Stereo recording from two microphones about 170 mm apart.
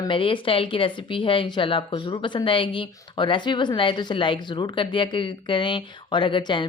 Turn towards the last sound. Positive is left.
turn(degrees=30)  # may be behind; listen again after turning